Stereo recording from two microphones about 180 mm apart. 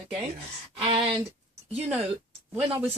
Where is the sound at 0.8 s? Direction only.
30° right (ahead or behind).